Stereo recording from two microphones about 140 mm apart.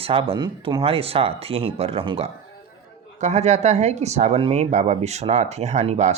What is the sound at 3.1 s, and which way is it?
Speech, 55° right (ahead or behind).